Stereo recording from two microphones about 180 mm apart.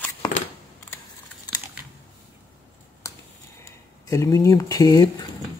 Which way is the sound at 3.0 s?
15° left (ahead or behind).